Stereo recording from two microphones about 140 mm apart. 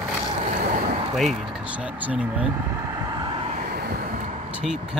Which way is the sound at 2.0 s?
10° right (ahead or behind).